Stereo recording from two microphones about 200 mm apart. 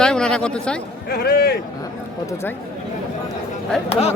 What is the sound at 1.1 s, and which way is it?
Speech, 50° left (ahead or behind).